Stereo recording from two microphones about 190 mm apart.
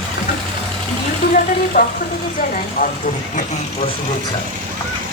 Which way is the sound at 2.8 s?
45° left (ahead or behind).